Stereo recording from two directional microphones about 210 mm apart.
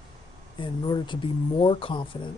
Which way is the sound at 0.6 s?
20° left (ahead or behind).